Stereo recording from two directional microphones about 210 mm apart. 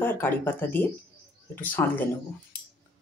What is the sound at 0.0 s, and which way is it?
Speech, 10° left (ahead or behind).